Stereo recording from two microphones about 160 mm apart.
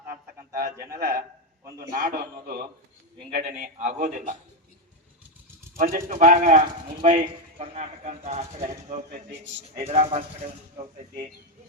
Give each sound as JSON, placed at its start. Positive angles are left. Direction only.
{"t": 0.1, "sound": "a sound", "side_deg": -70}
{"t": 0.9, "sound": "a man's voice", "side_deg": -65}
{"t": 3.4, "sound": "speech", "side_deg": -45}
{"t": 5.7, "sound": "speech", "side_deg": -60}
{"t": 7.2, "sound": "speech", "side_deg": -40}